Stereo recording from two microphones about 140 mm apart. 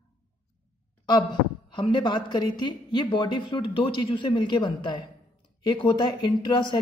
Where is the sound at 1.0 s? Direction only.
30° left (ahead or behind).